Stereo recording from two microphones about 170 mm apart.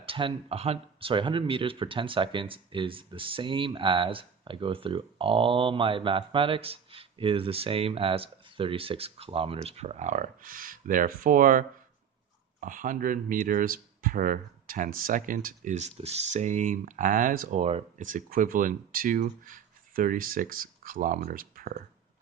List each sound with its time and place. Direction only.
0.0 s speech: 30° right (ahead or behind); by 17.6 s 55° right (ahead or behind)
17.6 s speech: 40° right (ahead or behind); by 21.8 s 60° right (ahead or behind)